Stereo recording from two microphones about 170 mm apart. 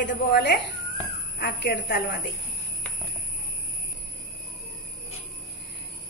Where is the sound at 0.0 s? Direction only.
90° left.